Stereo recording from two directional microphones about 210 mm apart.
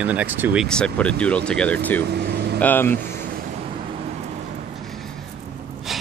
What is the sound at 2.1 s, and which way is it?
Air conditioning, 50° right (ahead or behind).